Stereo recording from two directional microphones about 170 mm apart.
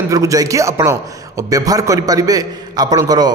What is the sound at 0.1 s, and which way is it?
A man's voice, 20° right (ahead or behind).